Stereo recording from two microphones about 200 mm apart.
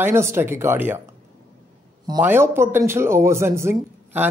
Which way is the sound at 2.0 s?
15° right (ahead or behind).